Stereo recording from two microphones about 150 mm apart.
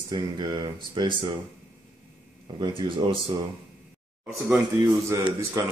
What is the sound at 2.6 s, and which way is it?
Speech, 35° right (ahead or behind).